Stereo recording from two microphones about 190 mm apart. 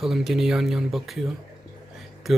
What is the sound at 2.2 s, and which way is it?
Speech, centre (ahead or behind).